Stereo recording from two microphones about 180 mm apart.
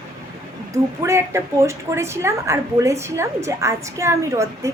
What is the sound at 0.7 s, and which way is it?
A woman's voice, 15° right (ahead or behind).